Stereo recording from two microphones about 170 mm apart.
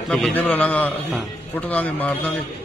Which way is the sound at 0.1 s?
10° left (ahead or behind).